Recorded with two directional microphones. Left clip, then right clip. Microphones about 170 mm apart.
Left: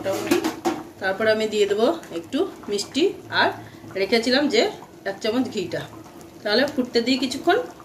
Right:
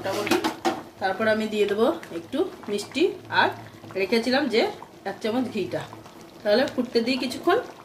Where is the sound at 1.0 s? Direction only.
55° right (ahead or behind).